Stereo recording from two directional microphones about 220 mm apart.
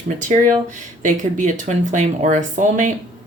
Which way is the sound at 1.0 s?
35° right (ahead or behind).